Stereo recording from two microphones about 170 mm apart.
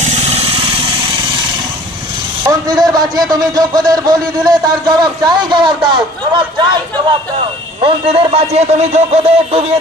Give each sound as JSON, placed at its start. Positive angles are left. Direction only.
{"t": 0.0, "sound": "vehicle", "side_deg": -35}
{"t": 2.4, "sound": "a man's voice", "side_deg": -25}